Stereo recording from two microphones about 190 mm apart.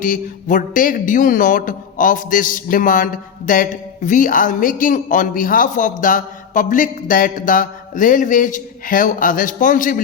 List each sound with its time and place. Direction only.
0.0 s a man's voice: 45° left (ahead or behind)